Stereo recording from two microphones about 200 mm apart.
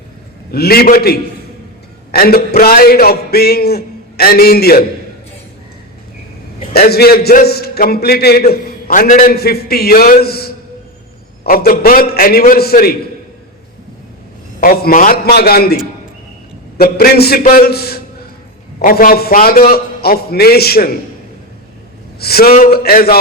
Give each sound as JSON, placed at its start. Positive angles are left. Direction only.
{"t": 0.5, "sound": "a man's voice", "side_deg": 50}
{"t": 6.7, "sound": "a man's voice", "side_deg": 50}
{"t": 14.6, "sound": "a man's voice", "side_deg": 45}
{"t": 22.2, "sound": "a man's voice", "side_deg": 50}